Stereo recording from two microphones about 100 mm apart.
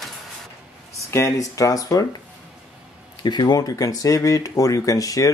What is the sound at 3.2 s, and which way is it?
Speech, 45° left (ahead or behind).